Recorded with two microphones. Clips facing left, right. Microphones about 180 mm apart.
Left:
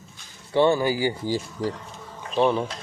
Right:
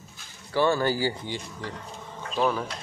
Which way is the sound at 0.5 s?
20° left (ahead or behind).